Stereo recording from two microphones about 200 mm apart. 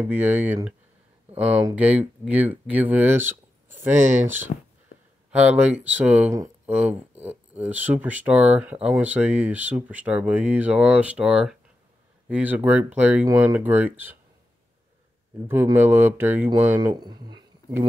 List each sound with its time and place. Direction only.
0.0 s speech: 10° right (ahead or behind)
4.0 s speech: 35° right (ahead or behind)
5.3 s speech: 5° right (ahead or behind)
15.4 s speech: 10° right (ahead or behind)
16.9 s speech: 20° right (ahead or behind)